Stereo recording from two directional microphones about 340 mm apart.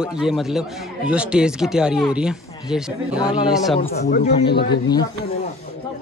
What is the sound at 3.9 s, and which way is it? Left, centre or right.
Speech, left.